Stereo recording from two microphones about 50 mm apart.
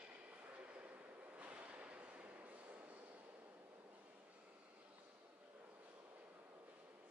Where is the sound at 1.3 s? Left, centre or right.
Right.